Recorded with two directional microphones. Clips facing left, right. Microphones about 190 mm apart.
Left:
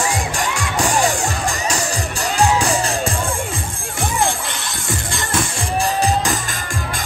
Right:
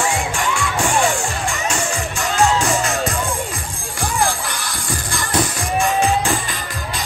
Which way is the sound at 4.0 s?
25° left (ahead or behind).